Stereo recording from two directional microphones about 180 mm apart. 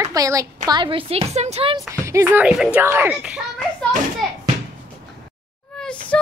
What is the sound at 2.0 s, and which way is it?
Speech, 15° right (ahead or behind).